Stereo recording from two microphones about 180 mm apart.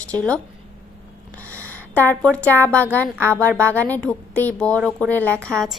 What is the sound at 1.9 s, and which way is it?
A woman's voice, 10° left (ahead or behind).